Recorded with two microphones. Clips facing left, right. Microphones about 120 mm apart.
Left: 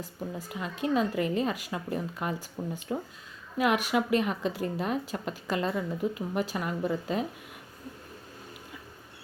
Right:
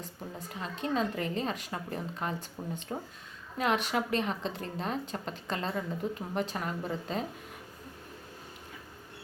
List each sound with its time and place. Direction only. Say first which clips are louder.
0.0 s a woman's voice: left 5 dB; 5° left (ahead or behind)